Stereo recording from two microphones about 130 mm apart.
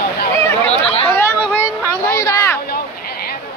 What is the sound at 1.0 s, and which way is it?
Chatter, 15° left (ahead or behind).